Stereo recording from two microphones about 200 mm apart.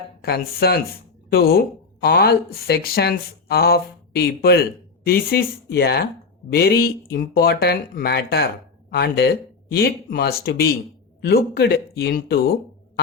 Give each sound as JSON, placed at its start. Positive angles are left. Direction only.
{"t": 0.2, "sound": "speech", "side_deg": 50}